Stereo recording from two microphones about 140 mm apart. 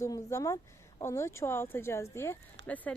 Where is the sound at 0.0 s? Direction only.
20° left (ahead or behind).